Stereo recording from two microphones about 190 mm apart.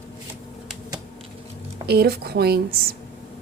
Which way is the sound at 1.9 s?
55° right (ahead or behind).